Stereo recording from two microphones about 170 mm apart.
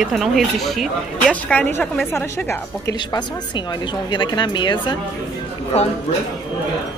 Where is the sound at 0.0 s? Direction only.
Centre (ahead or behind); by 3.0 s 15° left (ahead or behind).